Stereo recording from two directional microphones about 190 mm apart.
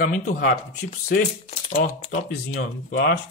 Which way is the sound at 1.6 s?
40° left (ahead or behind).